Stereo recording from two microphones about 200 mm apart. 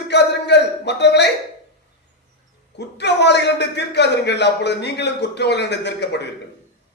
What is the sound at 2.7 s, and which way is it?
A man's voice, 60° left (ahead or behind).